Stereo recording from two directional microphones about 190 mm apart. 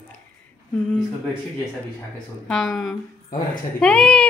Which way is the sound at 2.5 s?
Centre (ahead or behind).